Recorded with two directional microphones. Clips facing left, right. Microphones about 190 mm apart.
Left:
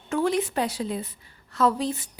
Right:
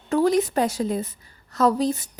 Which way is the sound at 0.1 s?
40° right (ahead or behind).